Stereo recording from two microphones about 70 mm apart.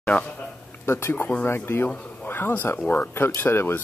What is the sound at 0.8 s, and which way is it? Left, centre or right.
Speech, left.